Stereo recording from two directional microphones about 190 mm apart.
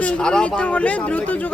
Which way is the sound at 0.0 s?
5° left (ahead or behind).